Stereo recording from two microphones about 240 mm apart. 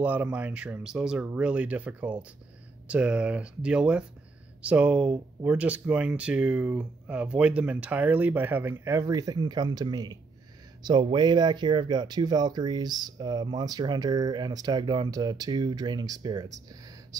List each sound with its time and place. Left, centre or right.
0.0 s speech: centre